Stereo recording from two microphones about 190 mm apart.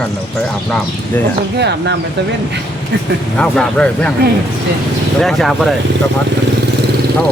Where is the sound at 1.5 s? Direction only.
60° right (ahead or behind).